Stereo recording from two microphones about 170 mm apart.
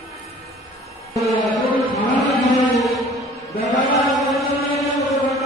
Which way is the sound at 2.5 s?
Centre (ahead or behind).